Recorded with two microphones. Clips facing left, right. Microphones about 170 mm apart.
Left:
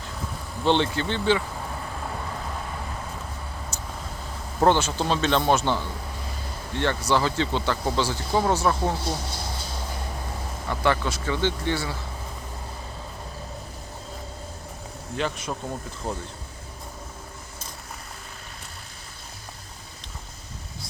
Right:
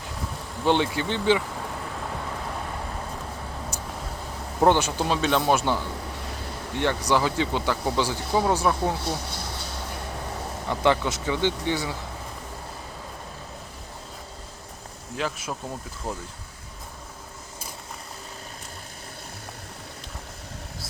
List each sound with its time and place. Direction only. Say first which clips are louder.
0.6 s speech: even; 10° right (ahead or behind)
3.7 s vehicle: right 2 dB; 10° right (ahead or behind)
4.6 s speech: even; 15° right (ahead or behind)
10.7 s speech: right 2 dB; 15° right (ahead or behind)
15.1 s speech: left 1 dB; 5° right (ahead or behind)